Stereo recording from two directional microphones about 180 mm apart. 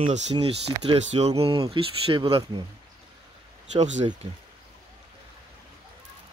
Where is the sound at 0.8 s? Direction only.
35° right (ahead or behind).